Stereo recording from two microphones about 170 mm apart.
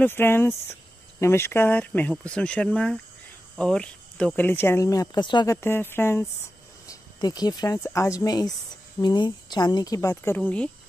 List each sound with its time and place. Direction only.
0.0 s speech: 15° left (ahead or behind)
5.6 s a woman's voice: 15° left (ahead or behind)